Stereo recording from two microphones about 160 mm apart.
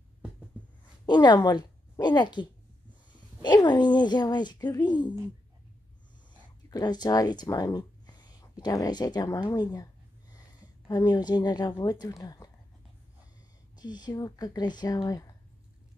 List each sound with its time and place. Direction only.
1.0 s a woman's voice: 25° left (ahead or behind)
6.7 s speech: 25° left (ahead or behind)
10.9 s speech: 25° left (ahead or behind)
13.7 s speech: 25° left (ahead or behind)